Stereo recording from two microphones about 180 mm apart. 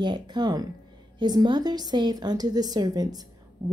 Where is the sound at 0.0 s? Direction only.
25° right (ahead or behind).